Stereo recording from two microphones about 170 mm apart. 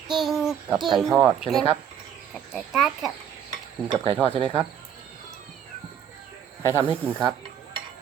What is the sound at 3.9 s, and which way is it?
Speech, 35° right (ahead or behind).